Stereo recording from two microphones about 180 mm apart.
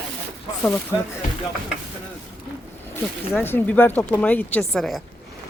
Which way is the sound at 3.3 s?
10° left (ahead or behind).